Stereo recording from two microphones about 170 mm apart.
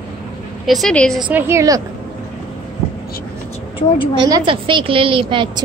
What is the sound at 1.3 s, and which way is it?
Speech, 15° right (ahead or behind).